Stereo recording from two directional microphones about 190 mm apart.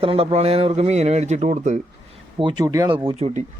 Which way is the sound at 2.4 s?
25° right (ahead or behind).